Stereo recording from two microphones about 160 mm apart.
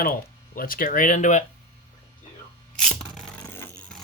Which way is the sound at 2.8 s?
5° left (ahead or behind).